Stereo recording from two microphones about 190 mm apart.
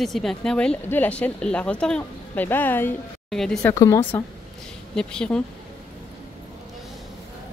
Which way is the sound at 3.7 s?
15° left (ahead or behind).